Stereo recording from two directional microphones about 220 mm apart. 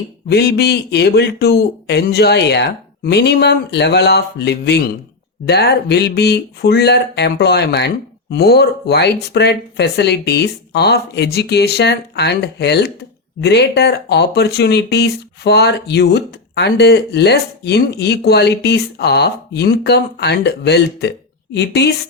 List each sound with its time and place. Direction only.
0.3 s speech: 50° left (ahead or behind)